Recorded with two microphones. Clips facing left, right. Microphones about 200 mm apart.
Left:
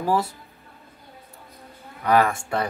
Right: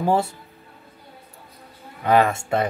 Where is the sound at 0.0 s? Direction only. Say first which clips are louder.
Right 2 dB; 25° right (ahead or behind).